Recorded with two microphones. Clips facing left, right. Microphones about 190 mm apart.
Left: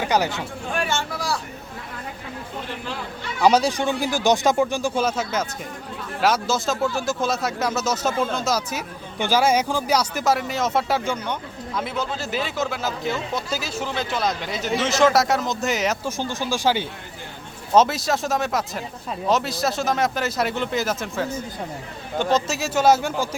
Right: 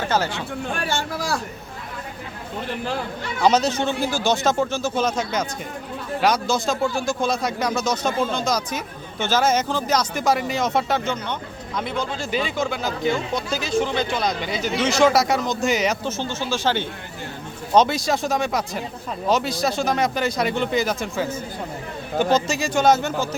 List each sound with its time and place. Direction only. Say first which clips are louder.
0.0 s speech: left 1 dB; 15° left (ahead or behind)
0.9 s speech: right 1 dB; 40° right (ahead or behind)
3.4 s speech: left 1 dB; 10° left (ahead or behind)
16.0 s speech: even; 15° left (ahead or behind)